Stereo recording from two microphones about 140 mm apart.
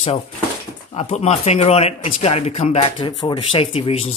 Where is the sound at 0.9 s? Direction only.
50° left (ahead or behind).